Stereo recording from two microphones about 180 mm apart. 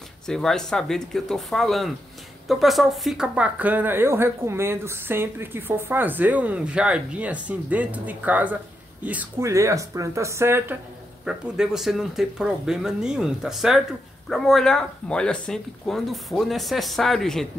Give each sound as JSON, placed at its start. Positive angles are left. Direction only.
{"t": 0.3, "sound": "speech", "side_deg": 5}